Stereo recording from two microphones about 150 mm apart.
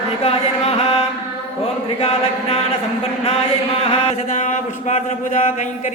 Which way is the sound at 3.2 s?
40° left (ahead or behind).